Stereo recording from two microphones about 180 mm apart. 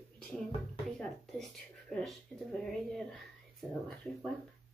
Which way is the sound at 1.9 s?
Centre (ahead or behind).